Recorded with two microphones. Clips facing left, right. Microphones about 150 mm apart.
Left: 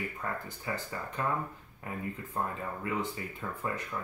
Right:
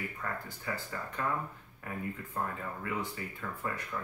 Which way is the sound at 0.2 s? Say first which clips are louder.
Left 1 dB; 25° left (ahead or behind).